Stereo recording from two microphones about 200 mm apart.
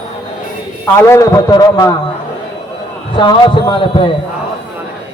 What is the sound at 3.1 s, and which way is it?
Speech, 25° left (ahead or behind).